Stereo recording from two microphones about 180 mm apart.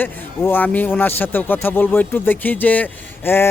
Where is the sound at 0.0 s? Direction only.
10° left (ahead or behind).